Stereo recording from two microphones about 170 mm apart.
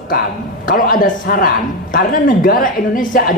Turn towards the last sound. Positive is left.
turn(degrees=55)  # may be behind; listen again after turning